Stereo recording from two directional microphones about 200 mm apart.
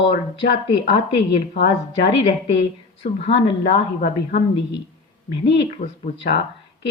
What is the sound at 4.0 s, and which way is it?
Speech, 50° left (ahead or behind).